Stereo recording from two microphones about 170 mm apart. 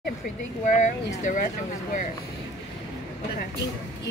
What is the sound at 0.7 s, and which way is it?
Speech, 45° left (ahead or behind).